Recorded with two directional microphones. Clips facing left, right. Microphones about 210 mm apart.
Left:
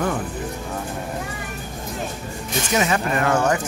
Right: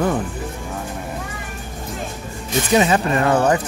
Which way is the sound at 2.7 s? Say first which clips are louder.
Right 5 dB; 25° right (ahead or behind).